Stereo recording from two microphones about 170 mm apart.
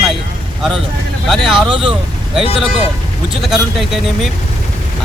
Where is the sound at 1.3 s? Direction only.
Centre (ahead or behind).